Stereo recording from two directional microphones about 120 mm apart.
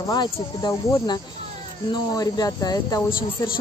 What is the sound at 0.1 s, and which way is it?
Speech, 35° left (ahead or behind).